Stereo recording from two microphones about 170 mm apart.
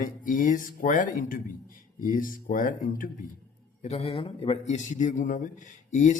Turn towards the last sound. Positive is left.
turn(degrees=45)  # may be behind; listen again after turning